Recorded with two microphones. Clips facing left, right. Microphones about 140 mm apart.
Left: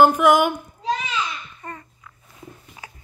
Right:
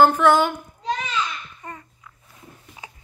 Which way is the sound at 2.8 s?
15° right (ahead or behind).